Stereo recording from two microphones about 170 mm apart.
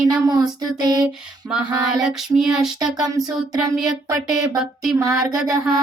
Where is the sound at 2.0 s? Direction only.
5° right (ahead or behind).